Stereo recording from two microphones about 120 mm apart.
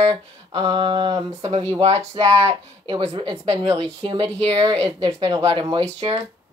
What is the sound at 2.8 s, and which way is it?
Speech, 40° right (ahead or behind).